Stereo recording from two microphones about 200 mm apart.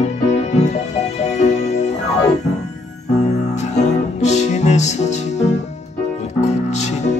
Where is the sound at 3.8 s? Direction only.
35° left (ahead or behind).